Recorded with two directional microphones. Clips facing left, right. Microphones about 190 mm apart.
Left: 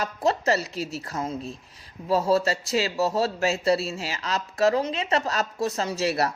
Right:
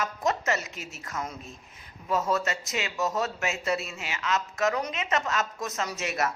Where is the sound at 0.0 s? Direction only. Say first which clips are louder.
Left 4 dB; 35° left (ahead or behind).